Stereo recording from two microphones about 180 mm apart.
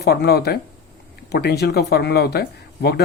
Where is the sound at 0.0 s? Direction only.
60° left (ahead or behind).